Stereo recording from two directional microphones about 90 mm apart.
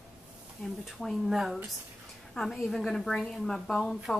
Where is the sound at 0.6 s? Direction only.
Centre (ahead or behind).